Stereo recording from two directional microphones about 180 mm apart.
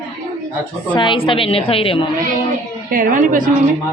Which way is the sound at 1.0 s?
30° left (ahead or behind).